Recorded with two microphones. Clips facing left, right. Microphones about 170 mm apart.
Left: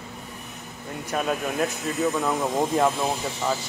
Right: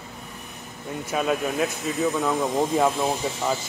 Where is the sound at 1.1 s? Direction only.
Centre (ahead or behind).